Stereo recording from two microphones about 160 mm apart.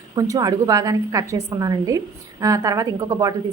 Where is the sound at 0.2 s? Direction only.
20° right (ahead or behind).